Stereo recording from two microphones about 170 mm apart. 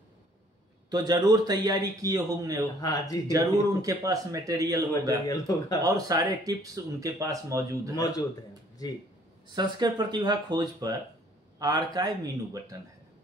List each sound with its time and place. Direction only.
0.8 s speech: 25° right (ahead or behind)
2.8 s speech: 20° left (ahead or behind)
3.3 s speech: 20° right (ahead or behind)
5.2 s speech: 20° left (ahead or behind)
5.8 s speech: 20° right (ahead or behind)
7.9 s speech: 20° left (ahead or behind)
9.5 s speech: 25° right (ahead or behind)